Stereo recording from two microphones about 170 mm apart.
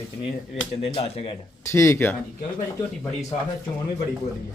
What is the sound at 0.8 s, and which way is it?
Speech, 35° left (ahead or behind).